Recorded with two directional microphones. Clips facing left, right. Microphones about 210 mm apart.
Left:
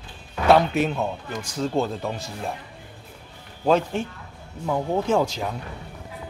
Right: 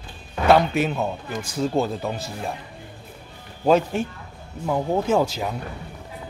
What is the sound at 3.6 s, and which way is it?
Speech, 10° right (ahead or behind).